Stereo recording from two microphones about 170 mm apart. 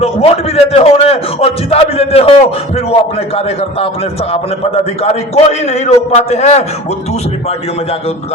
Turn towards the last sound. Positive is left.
turn(degrees=40)  # may be behind; listen again after turning